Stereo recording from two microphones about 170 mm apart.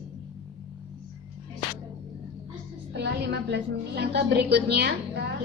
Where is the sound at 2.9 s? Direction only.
80° right.